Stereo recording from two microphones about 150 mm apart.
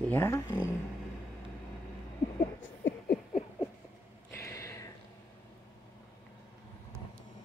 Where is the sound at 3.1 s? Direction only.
55° left (ahead or behind).